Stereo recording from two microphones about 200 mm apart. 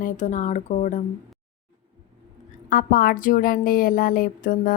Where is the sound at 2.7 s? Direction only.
45° left (ahead or behind).